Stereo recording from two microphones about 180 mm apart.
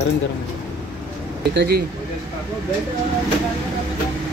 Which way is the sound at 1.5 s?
60° right (ahead or behind).